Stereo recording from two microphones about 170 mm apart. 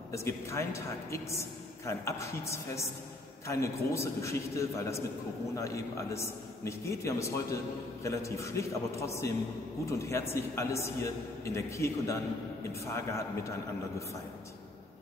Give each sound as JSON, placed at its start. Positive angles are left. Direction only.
{"t": 0.1, "sound": "a man's voice", "side_deg": 15}